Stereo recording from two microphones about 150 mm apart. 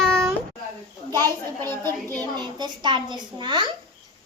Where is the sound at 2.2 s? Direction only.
30° right (ahead or behind).